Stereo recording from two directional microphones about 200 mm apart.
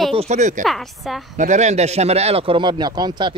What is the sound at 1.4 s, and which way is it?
A man's voice, 35° right (ahead or behind).